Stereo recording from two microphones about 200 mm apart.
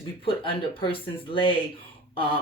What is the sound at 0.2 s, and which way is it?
Speech, 25° left (ahead or behind).